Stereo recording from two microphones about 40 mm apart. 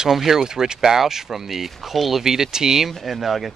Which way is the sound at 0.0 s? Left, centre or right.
Centre.